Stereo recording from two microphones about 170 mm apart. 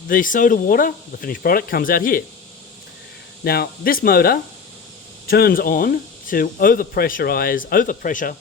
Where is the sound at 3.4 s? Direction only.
65° left (ahead or behind).